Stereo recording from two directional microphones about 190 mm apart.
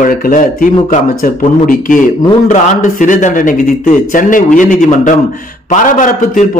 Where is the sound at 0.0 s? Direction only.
45° left (ahead or behind).